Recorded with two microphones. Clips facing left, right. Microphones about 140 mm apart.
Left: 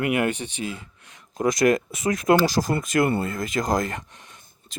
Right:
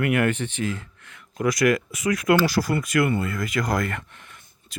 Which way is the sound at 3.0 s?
35° left (ahead or behind).